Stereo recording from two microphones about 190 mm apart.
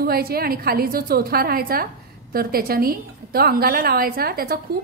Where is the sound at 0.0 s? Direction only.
55° right (ahead or behind).